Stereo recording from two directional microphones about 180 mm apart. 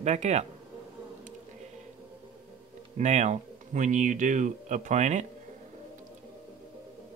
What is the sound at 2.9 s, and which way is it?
Speech, 40° right (ahead or behind).